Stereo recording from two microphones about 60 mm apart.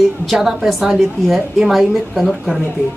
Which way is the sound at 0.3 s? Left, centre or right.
Centre.